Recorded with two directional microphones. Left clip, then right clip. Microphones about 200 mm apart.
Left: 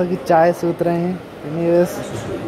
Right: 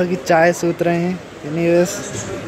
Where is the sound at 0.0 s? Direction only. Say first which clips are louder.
Even; centre (ahead or behind).